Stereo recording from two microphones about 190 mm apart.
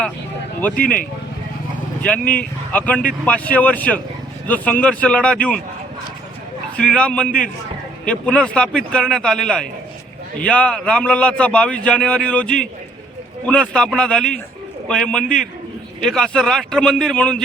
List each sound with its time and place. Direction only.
0.6 s speech: 10° left (ahead or behind)
2.0 s speech: 5° left (ahead or behind)
6.7 s a man's voice: 5° left (ahead or behind)